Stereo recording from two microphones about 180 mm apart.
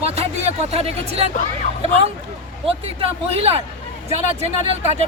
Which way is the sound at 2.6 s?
30° right (ahead or behind).